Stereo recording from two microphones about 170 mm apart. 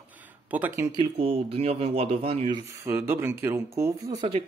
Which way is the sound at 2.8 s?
15° right (ahead or behind).